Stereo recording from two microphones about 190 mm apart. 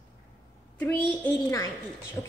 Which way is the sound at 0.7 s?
10° left (ahead or behind).